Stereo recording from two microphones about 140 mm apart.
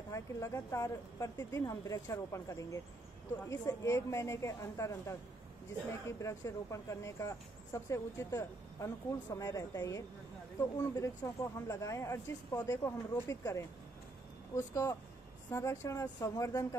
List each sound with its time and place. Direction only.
0.1 s speech: 20° left (ahead or behind)
11.2 s speech: 20° left (ahead or behind)